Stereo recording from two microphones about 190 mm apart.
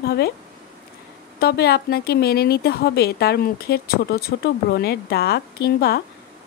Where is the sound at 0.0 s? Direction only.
55° left (ahead or behind).